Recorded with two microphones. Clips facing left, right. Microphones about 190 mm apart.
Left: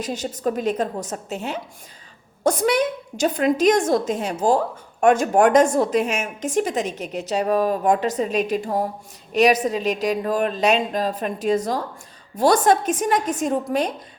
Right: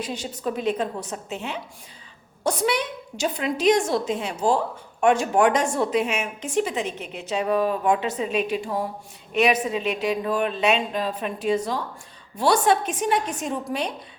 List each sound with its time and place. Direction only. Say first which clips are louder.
0.0 s a woman's voice: left 4 dB; 45° left (ahead or behind)